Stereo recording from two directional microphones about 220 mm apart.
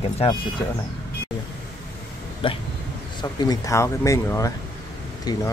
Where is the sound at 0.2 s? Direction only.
20° left (ahead or behind).